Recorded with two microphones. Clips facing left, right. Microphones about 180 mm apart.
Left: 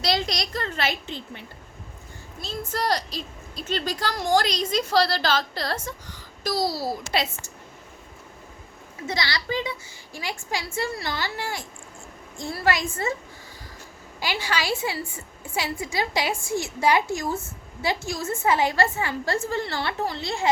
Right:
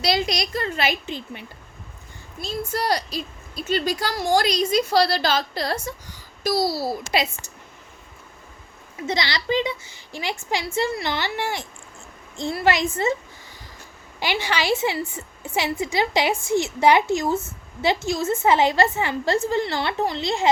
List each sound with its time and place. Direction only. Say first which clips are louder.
0.0 s a woman's voice: right 3 dB; 10° right (ahead or behind)
9.0 s a woman's voice: right 4 dB; 20° right (ahead or behind)
14.2 s a woman's voice: right 3 dB; 20° right (ahead or behind)